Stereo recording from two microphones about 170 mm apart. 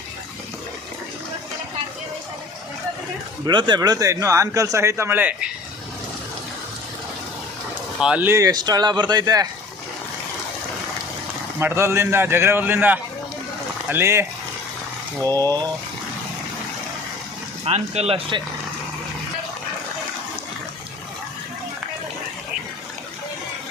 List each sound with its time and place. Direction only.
3.4 s a man's voice: 25° right (ahead or behind); by 5.5 s 10° right (ahead or behind)
8.0 s a man's voice: 10° right (ahead or behind)
11.6 s a man's voice: 15° right (ahead or behind)
15.3 s speech: 15° left (ahead or behind)
17.7 s speech: 40° right (ahead or behind)